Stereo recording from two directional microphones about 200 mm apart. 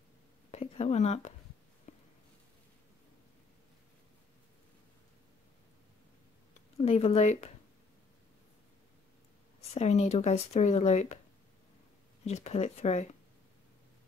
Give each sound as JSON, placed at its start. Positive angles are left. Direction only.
{"t": 0.5, "sound": "a sound", "side_deg": 30}
{"t": 6.8, "sound": "speech", "side_deg": 30}
{"t": 9.8, "sound": "speech", "side_deg": 35}
{"t": 12.3, "sound": "speech", "side_deg": 35}